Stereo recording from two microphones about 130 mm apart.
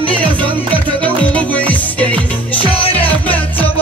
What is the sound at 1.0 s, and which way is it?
Music, 10° left (ahead or behind).